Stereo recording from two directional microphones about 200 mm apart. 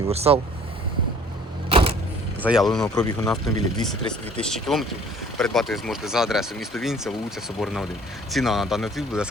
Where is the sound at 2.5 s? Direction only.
Centre (ahead or behind).